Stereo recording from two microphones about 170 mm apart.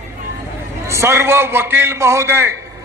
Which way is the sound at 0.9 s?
15° right (ahead or behind).